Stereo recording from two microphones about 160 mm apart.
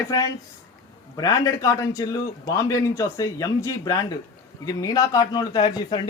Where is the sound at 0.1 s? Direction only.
25° left (ahead or behind).